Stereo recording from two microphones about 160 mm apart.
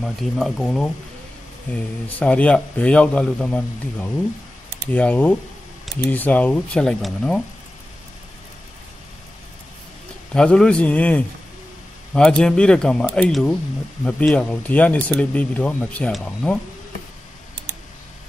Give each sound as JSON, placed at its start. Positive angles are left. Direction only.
{"t": 0.0, "sound": "speech", "side_deg": 0}
{"t": 10.3, "sound": "speech", "side_deg": 5}